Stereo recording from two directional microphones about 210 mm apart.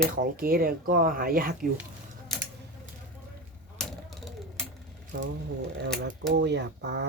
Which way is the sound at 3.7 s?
Centre (ahead or behind).